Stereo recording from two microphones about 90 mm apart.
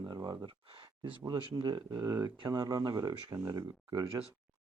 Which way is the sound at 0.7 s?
75° right (ahead or behind).